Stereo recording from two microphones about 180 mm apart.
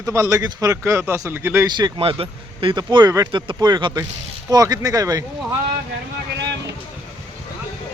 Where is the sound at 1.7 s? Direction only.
25° right (ahead or behind).